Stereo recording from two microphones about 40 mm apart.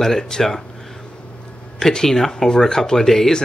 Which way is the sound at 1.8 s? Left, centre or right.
Centre.